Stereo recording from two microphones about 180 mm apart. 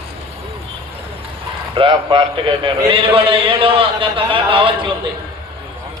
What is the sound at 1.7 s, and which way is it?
A man's voice, 30° right (ahead or behind).